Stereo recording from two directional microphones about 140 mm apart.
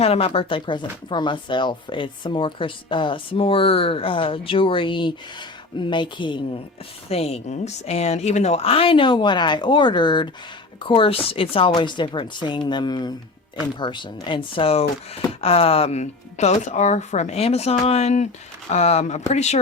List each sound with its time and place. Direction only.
0.0 s speech: 45° left (ahead or behind)
7.1 s speech: 45° left (ahead or behind)